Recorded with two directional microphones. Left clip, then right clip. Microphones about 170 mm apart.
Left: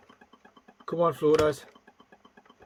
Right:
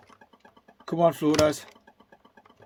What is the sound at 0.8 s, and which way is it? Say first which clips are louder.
Speech: right 2 dB; 40° right (ahead or behind).